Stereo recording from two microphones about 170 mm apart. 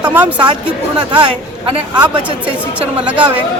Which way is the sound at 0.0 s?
10° right (ahead or behind).